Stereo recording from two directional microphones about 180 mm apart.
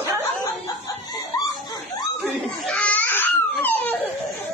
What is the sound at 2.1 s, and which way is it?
Crying, 5° left (ahead or behind).